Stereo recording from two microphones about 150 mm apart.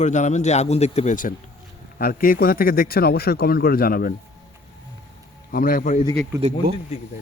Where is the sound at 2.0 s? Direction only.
80° left.